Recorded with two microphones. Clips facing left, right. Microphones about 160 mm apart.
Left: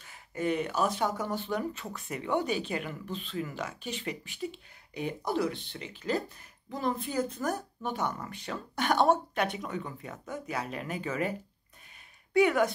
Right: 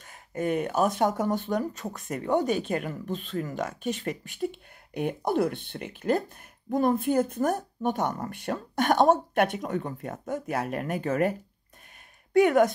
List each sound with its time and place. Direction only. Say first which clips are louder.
0.0 s speech: right 2 dB; 50° right (ahead or behind)
12.4 s speech: right 5 dB; 50° right (ahead or behind)